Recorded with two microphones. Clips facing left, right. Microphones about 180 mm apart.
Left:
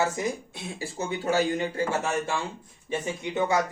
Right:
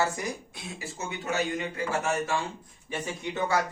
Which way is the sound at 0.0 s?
20° left (ahead or behind).